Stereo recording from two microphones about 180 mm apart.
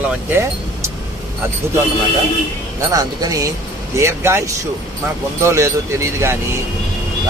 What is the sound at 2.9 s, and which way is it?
Speech, 20° right (ahead or behind).